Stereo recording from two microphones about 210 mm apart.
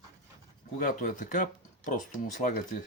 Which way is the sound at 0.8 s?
40° left (ahead or behind).